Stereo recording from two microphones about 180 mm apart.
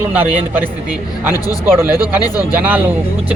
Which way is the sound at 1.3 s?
20° left (ahead or behind).